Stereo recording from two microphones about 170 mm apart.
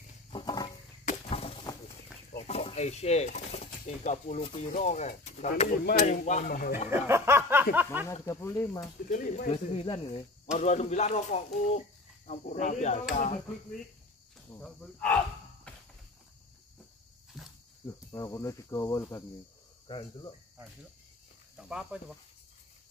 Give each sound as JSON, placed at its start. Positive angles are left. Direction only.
{"t": 0.3, "sound": "roaring cats", "side_deg": 25}
{"t": 1.0, "sound": "a sound", "side_deg": 35}
{"t": 2.4, "sound": "speech", "side_deg": 40}
{"t": 6.9, "sound": "speech", "side_deg": -15}
{"t": 8.1, "sound": "cricket", "side_deg": 15}
{"t": 9.1, "sound": "speech", "side_deg": 55}
{"t": 9.5, "sound": "speech", "side_deg": 35}
{"t": 14.6, "sound": "speech", "side_deg": 5}
{"t": 15.7, "sound": "cricket", "side_deg": 5}
{"t": 17.8, "sound": "cricket", "side_deg": 20}
{"t": 21.5, "sound": "speech", "side_deg": -5}